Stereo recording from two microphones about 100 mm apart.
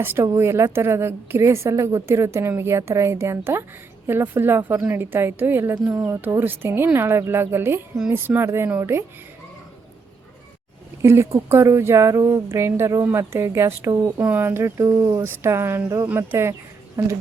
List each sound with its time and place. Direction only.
0.0 s a woman's voice: 20° right (ahead or behind)
11.0 s a woman's voice: 25° right (ahead or behind)
14.2 s a woman's voice: 20° right (ahead or behind)